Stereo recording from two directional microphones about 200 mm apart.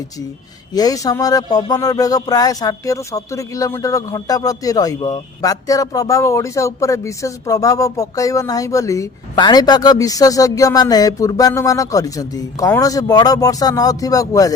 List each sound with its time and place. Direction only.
0.7 s speech: 20° left (ahead or behind)